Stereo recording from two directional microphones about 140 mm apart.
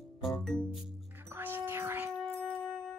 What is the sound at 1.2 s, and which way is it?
Music, 15° right (ahead or behind).